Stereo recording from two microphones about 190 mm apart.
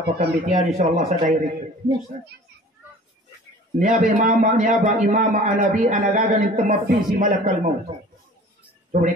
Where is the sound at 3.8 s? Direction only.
45° right (ahead or behind).